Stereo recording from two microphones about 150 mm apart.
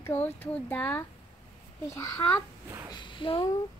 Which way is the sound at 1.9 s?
20° left (ahead or behind).